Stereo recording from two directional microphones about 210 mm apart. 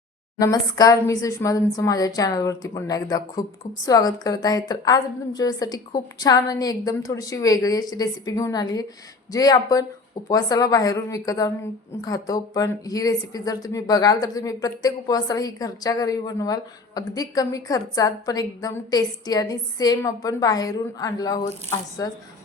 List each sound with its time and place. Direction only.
0.3 s speech: 15° left (ahead or behind)